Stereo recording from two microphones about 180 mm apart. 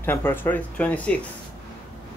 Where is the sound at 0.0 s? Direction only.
10° left (ahead or behind).